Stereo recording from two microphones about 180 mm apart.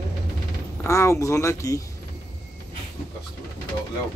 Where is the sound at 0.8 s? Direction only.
15° left (ahead or behind).